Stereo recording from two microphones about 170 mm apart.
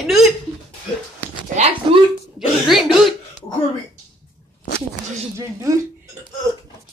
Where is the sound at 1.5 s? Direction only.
40° right (ahead or behind).